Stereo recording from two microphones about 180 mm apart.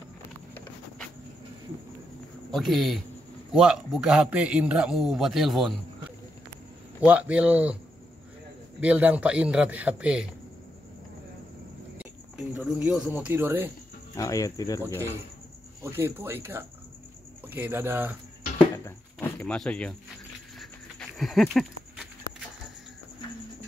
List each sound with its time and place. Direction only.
2.5 s a man's voice: centre (ahead or behind)
8.8 s a man's voice: 10° right (ahead or behind)
12.0 s speech: 5° right (ahead or behind)
14.1 s speech: 20° left (ahead or behind)
15.8 s a man's voice: 15° right (ahead or behind)
18.9 s speech: 10° left (ahead or behind)
21.2 s a sound: centre (ahead or behind)